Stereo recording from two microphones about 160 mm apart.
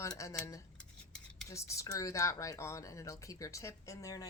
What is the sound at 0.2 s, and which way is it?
Speech, 20° left (ahead or behind).